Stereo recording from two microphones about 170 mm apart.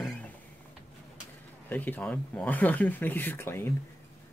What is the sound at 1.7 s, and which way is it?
Speech, 10° left (ahead or behind).